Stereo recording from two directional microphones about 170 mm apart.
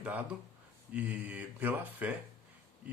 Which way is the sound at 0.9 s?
10° right (ahead or behind).